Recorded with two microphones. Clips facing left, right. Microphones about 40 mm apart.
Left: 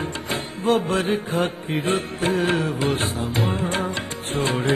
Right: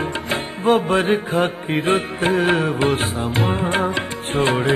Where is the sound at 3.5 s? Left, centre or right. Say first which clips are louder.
Right 5 dB; right.